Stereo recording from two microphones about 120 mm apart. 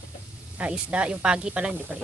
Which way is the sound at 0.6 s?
10° right (ahead or behind).